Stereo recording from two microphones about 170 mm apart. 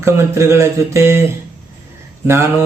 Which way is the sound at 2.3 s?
15° right (ahead or behind).